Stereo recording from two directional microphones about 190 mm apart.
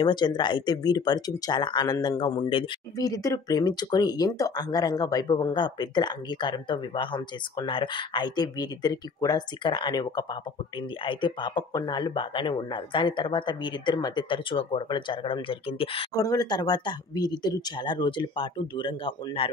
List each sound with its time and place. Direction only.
0.0 s speech: 25° left (ahead or behind)